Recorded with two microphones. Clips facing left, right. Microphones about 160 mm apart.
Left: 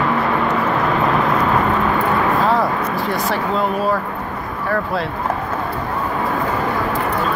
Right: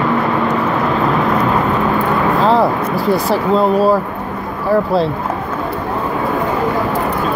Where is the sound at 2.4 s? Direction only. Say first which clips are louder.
Right 4 dB; 30° right (ahead or behind).